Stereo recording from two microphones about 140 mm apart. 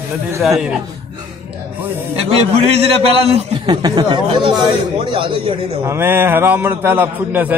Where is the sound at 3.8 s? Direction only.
35° right (ahead or behind).